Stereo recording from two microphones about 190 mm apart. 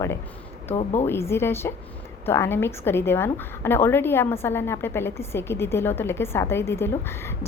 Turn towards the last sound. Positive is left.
turn(degrees=15)  # may be behind; listen again after turning